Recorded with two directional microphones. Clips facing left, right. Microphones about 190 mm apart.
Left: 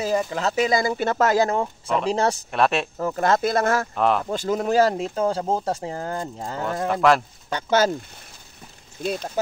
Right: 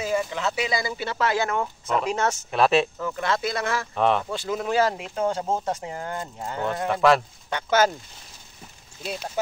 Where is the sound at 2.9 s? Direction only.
40° left (ahead or behind).